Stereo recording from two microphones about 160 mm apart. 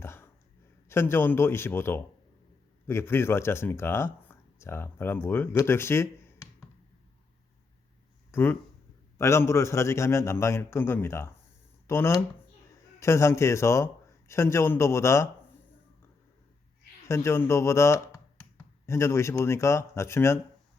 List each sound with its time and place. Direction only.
0.0 s a sound: 15° left (ahead or behind)
0.9 s a man's voice: 15° left (ahead or behind)
8.3 s a man's voice: 15° left (ahead or behind)
17.1 s speech: 15° left (ahead or behind)